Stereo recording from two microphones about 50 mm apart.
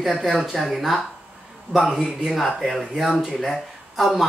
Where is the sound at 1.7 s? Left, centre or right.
Right.